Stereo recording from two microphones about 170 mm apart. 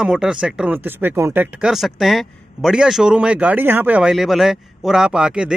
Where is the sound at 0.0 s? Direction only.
5° right (ahead or behind).